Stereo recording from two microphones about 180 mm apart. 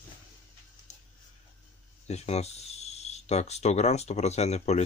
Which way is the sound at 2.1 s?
35° left (ahead or behind).